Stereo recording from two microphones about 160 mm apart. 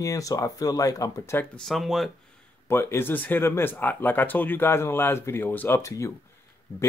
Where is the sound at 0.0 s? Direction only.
20° left (ahead or behind); by 2.0 s centre (ahead or behind).